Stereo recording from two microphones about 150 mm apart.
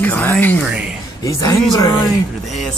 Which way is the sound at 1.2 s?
20° left (ahead or behind).